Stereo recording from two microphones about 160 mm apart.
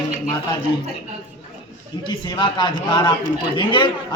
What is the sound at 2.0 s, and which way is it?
Male singing, 30° left (ahead or behind).